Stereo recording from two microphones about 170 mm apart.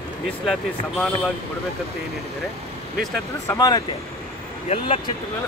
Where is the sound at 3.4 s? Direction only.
20° left (ahead or behind).